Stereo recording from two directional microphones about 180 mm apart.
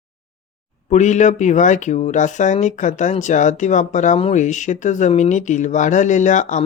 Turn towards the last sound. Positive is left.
turn(degrees=45)  # may be behind; listen again after turning